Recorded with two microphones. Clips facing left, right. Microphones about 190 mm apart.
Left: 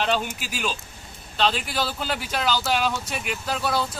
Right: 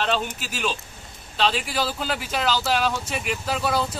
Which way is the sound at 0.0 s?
5° left (ahead or behind).